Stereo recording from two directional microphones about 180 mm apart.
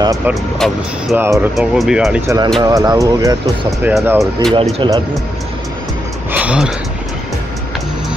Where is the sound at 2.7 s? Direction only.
20° right (ahead or behind); by 4.5 s centre (ahead or behind).